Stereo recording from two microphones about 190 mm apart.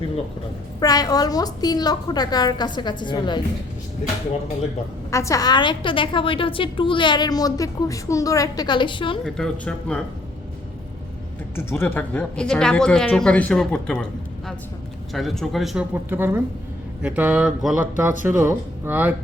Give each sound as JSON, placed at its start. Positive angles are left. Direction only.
{"t": 0.8, "sound": "a woman's voice", "side_deg": 20}
{"t": 5.1, "sound": "a woman's voice", "side_deg": 15}
{"t": 9.2, "sound": "speech", "side_deg": 5}
{"t": 11.5, "sound": "speech", "side_deg": 10}